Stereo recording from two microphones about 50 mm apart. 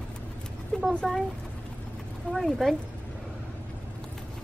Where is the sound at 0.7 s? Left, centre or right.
Centre.